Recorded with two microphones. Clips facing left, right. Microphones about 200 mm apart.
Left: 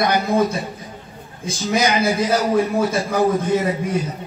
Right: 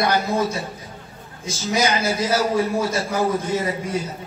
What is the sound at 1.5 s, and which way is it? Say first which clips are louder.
A man's voice: left 2 dB; 15° left (ahead or behind).